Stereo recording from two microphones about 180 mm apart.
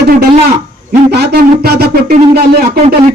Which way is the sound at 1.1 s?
65° right (ahead or behind).